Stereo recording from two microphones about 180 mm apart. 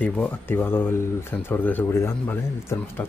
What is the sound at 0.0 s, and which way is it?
Speech, 10° left (ahead or behind).